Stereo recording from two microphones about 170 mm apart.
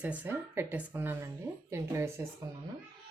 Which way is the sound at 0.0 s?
10° right (ahead or behind).